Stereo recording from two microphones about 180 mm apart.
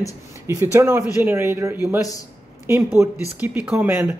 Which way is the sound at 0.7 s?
15° right (ahead or behind).